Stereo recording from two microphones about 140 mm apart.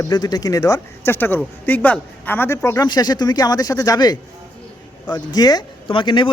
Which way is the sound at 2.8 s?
30° left (ahead or behind).